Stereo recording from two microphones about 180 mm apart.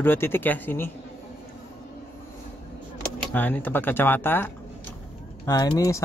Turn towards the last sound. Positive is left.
turn(degrees=20)  # may be behind; listen again after turning